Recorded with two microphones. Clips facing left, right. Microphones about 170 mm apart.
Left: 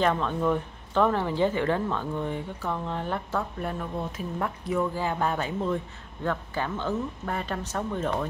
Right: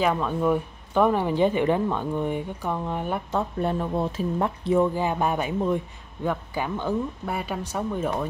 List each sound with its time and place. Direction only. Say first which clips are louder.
0.0 s speech: right 2 dB; 10° right (ahead or behind)